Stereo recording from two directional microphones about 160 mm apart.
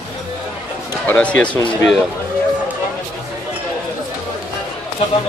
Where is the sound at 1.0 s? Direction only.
5° left (ahead or behind).